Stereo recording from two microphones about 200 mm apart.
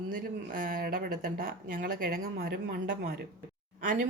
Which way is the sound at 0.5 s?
45° right (ahead or behind).